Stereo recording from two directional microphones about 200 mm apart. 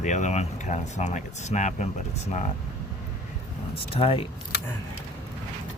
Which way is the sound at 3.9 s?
30° left (ahead or behind).